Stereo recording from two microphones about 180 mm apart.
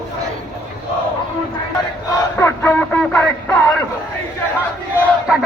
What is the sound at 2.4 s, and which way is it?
Radio, 10° left (ahead or behind).